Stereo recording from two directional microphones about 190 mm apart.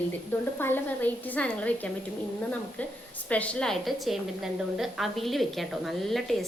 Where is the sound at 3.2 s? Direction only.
5° left (ahead or behind).